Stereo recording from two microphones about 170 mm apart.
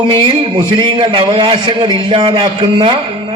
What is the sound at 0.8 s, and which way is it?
A man's voice, 30° right (ahead or behind).